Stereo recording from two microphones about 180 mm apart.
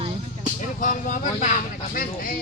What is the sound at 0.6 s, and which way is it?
Speech, 45° left (ahead or behind).